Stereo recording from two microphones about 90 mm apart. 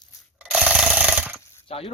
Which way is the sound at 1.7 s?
90° left.